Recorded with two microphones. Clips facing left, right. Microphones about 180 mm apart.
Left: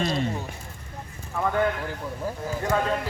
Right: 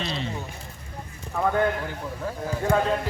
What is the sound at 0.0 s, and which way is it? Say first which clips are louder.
Speech: left 5 dB; 50° left (ahead or behind).